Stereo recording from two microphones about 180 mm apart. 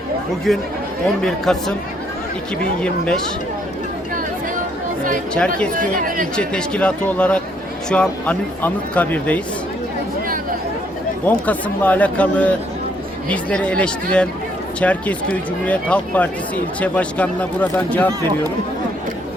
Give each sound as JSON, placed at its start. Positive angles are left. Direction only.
{"t": 0.5, "sound": "speech", "side_deg": 0}
{"t": 5.7, "sound": "speech", "side_deg": -50}
{"t": 6.3, "sound": "speech", "side_deg": 5}
{"t": 11.3, "sound": "speech", "side_deg": 10}